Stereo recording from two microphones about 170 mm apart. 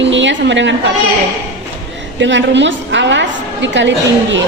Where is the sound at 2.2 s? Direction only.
90° right.